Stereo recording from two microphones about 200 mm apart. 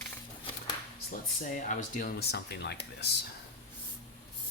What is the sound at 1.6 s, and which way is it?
Speech, 40° left (ahead or behind).